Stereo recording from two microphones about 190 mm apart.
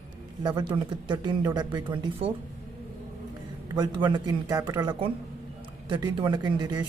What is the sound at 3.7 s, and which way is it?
Speech, 20° right (ahead or behind).